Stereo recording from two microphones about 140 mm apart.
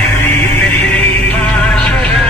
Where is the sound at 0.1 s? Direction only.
15° left (ahead or behind).